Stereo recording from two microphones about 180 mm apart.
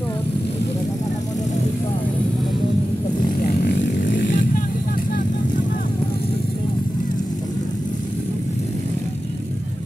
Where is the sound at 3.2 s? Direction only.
65° left (ahead or behind).